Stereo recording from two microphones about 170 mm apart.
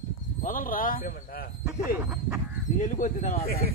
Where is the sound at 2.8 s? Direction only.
50° left (ahead or behind).